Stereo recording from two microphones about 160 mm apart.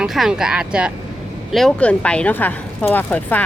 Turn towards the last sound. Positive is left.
turn(degrees=10)  # may be behind; listen again after turning